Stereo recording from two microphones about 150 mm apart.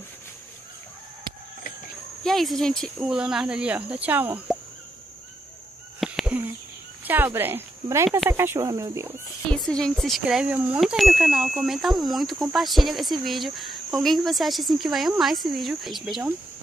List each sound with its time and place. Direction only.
2.2 s speech: centre (ahead or behind)
5.9 s a sound: 5° right (ahead or behind)
7.1 s speech: 10° right (ahead or behind)
9.5 s speech: 5° left (ahead or behind)